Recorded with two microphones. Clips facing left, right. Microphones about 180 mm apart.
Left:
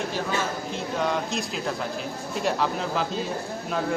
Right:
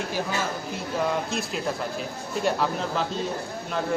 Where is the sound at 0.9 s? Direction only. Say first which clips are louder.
Right 1 dB; centre (ahead or behind).